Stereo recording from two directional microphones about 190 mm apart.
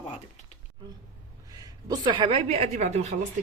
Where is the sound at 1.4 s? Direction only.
20° right (ahead or behind); by 3.1 s 35° right (ahead or behind).